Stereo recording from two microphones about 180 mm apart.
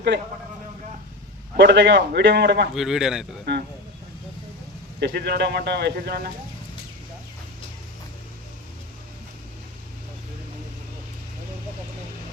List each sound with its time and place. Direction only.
1.5 s a man's voice: 75° right (ahead or behind)
2.7 s speech: centre (ahead or behind)
3.5 s a man's voice: 65° right (ahead or behind)
4.9 s speech: 65° right (ahead or behind)